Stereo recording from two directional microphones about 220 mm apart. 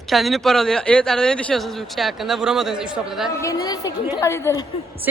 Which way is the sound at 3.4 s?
15° left (ahead or behind).